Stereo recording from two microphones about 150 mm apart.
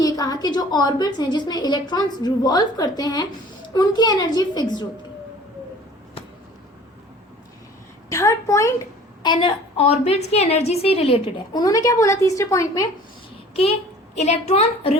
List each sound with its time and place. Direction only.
0.0 s a woman's voice: 25° left (ahead or behind)
8.1 s a woman's voice: 20° left (ahead or behind)
9.2 s a woman's voice: 30° left (ahead or behind)
14.2 s a woman's voice: 50° left (ahead or behind)